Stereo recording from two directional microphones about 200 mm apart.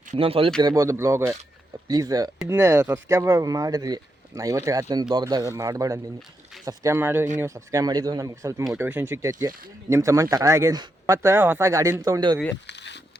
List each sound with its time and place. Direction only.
0.1 s speech: 30° right (ahead or behind)
0.6 s speech: 15° right (ahead or behind)
12.6 s a sound: 60° left (ahead or behind)